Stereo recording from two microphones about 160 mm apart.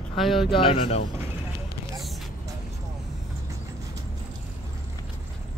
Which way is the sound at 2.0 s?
Centre (ahead or behind).